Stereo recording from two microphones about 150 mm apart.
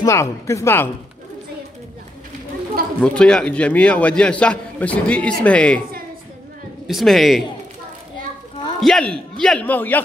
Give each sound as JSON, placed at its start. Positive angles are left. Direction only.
{"t": 0.0, "sound": "speech", "side_deg": 20}
{"t": 3.0, "sound": "a man's voice", "side_deg": 5}
{"t": 6.9, "sound": "a man's voice", "side_deg": 0}
{"t": 8.8, "sound": "a man's voice", "side_deg": 5}